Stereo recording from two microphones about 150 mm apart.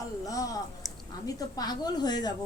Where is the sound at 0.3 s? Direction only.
25° left (ahead or behind).